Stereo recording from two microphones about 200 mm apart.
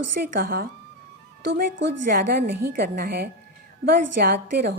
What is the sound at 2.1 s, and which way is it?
A woman's voice, 50° right (ahead or behind).